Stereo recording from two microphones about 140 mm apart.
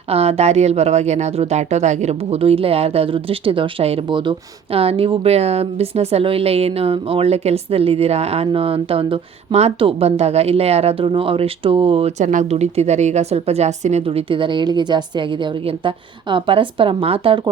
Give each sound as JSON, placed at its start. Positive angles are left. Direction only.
{"t": 0.1, "sound": "speech", "side_deg": -45}
{"t": 12.2, "sound": "a woman's voice", "side_deg": -60}